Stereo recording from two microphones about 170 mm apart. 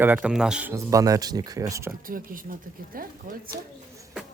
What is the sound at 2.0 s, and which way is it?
Speech, 55° right (ahead or behind).